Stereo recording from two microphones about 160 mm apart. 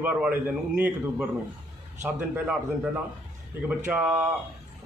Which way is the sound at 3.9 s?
10° right (ahead or behind).